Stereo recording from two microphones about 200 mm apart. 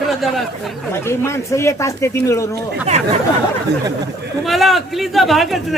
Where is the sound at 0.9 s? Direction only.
10° left (ahead or behind).